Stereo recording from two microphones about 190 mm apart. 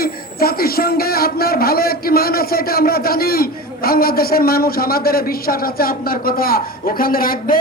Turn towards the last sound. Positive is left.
turn(degrees=50)  # may be behind; listen again after turning